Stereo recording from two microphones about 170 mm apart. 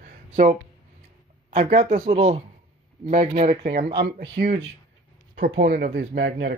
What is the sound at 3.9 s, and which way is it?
Speech, 75° right (ahead or behind).